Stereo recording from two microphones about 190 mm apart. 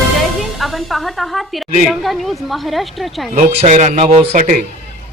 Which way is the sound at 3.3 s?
35° right (ahead or behind).